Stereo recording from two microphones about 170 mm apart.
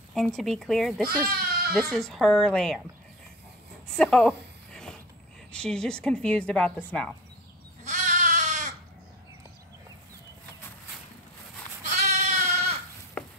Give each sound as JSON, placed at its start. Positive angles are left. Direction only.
{"t": 0.1, "sound": "a woman's voice", "side_deg": 0}
{"t": 1.3, "sound": "goat", "side_deg": -65}
{"t": 1.7, "sound": "a woman's voice", "side_deg": 0}
{"t": 3.9, "sound": "a sound", "side_deg": 5}
{"t": 5.5, "sound": "a woman's voice", "side_deg": 5}
{"t": 7.8, "sound": "goat", "side_deg": -45}
{"t": 11.9, "sound": "sheep", "side_deg": -40}